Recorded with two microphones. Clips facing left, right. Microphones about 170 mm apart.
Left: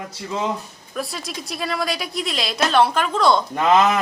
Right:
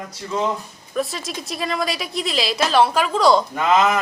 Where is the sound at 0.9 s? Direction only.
Centre (ahead or behind).